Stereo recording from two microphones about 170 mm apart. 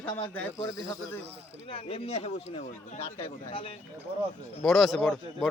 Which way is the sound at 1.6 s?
35° left (ahead or behind).